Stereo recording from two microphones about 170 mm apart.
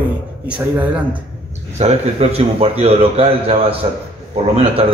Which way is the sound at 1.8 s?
35° right (ahead or behind).